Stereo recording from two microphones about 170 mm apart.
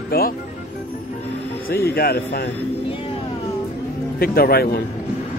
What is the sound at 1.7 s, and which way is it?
Speech, 65° left (ahead or behind).